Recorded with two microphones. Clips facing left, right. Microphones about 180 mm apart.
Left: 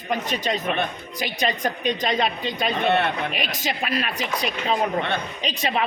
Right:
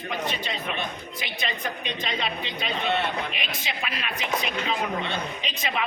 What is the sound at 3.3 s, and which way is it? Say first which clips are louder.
Speech: left 6 dB; 40° left (ahead or behind).